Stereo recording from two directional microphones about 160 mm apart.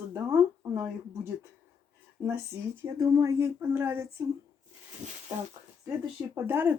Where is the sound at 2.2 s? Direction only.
20° right (ahead or behind).